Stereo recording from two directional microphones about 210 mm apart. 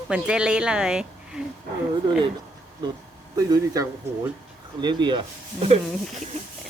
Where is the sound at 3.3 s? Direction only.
15° right (ahead or behind).